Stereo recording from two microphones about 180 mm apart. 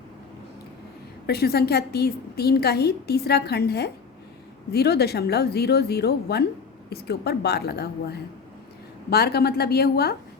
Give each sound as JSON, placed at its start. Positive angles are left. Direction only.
{"t": 1.3, "sound": "a woman's voice", "side_deg": 60}